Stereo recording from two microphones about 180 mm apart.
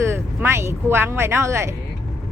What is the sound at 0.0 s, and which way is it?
Speech, 15° right (ahead or behind).